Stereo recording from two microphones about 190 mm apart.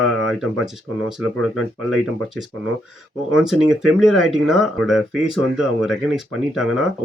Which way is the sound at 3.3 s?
Centre (ahead or behind).